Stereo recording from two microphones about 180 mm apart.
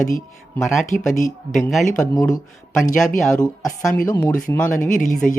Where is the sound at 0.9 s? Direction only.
45° left (ahead or behind).